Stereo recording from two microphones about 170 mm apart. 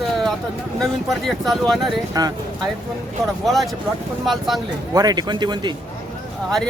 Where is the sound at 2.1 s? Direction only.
20° right (ahead or behind).